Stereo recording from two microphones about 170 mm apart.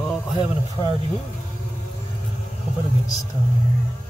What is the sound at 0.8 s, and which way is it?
Speech, 15° left (ahead or behind).